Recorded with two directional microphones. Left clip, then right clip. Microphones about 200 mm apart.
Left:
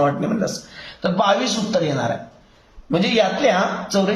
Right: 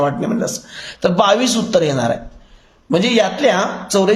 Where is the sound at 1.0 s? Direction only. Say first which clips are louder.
Right 4 dB; 60° right (ahead or behind).